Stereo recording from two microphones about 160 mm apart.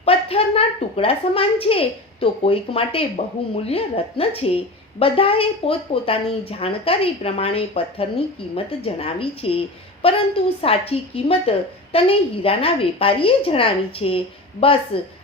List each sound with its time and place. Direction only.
0.0 s a woman's voice: 35° left (ahead or behind)